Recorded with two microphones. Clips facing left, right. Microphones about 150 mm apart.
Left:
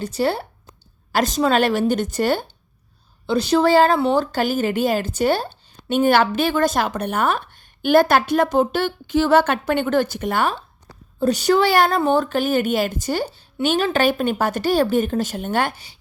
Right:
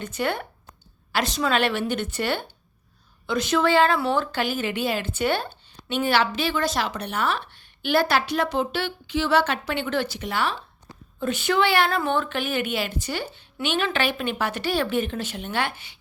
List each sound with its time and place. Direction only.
0.0 s a woman's voice: 35° left (ahead or behind)
1.1 s a woman's voice: 45° left (ahead or behind)